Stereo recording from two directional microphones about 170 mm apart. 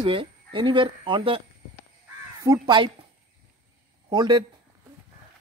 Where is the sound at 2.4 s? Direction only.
20° right (ahead or behind).